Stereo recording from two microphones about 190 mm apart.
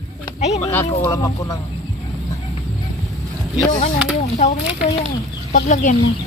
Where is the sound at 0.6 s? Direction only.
10° left (ahead or behind).